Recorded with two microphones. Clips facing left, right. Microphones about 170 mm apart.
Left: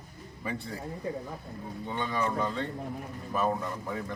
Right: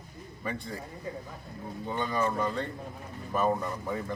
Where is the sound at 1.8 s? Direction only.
Centre (ahead or behind).